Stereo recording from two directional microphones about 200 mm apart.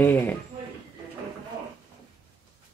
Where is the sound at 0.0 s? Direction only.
10° left (ahead or behind).